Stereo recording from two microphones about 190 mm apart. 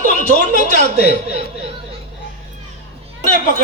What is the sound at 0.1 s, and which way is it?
Speech, 45° left (ahead or behind).